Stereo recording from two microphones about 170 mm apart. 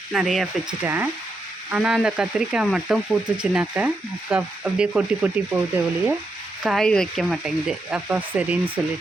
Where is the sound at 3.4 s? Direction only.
5° right (ahead or behind).